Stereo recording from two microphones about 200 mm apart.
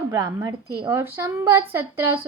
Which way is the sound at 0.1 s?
15° right (ahead or behind).